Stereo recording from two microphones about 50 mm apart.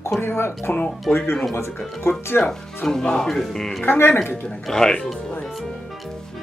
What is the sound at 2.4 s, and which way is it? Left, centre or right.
Speech, left.